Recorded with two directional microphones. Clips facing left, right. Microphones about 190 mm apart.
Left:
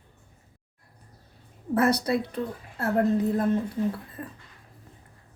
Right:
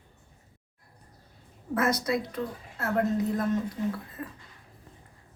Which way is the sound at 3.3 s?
30° left (ahead or behind).